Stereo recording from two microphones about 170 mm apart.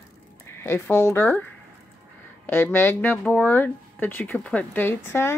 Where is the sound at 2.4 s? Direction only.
10° left (ahead or behind).